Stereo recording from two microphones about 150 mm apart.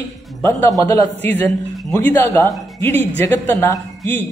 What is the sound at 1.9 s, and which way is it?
A man's voice, 20° left (ahead or behind).